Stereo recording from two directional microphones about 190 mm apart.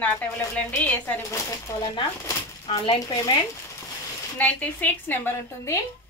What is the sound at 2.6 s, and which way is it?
Speech, 25° left (ahead or behind).